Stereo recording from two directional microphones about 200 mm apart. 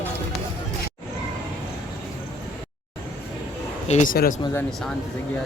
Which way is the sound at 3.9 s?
40° left (ahead or behind).